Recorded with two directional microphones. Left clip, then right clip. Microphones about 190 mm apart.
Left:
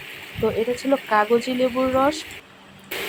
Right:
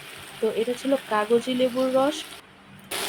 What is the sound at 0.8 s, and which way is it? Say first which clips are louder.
Speech: left 4 dB; 10° left (ahead or behind).